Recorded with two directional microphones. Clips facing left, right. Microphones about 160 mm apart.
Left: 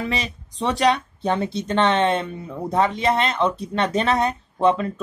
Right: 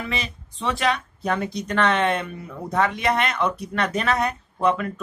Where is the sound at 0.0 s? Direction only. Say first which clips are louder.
Left 3 dB; 35° left (ahead or behind).